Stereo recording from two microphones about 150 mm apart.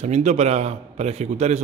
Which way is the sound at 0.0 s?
50° right (ahead or behind).